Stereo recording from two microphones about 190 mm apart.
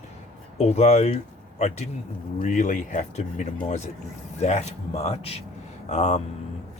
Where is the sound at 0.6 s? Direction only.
35° left (ahead or behind).